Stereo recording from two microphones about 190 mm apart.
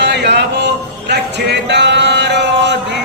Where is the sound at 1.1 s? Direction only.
65° right (ahead or behind).